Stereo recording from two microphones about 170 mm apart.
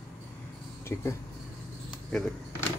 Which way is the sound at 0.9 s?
15° left (ahead or behind).